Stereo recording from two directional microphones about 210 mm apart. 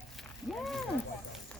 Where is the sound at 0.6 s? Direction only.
Centre (ahead or behind).